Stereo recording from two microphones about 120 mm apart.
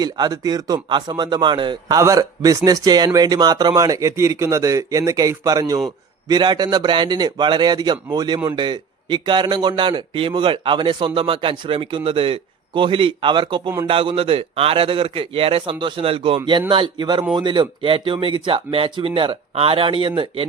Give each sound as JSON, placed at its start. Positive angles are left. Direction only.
{"t": 0.0, "sound": "a man's voice", "side_deg": -35}
{"t": 2.0, "sound": "a man's voice", "side_deg": -30}